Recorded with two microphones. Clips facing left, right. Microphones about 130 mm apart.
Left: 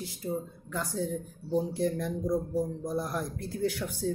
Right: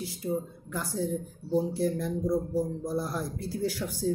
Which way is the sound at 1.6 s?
5° right (ahead or behind).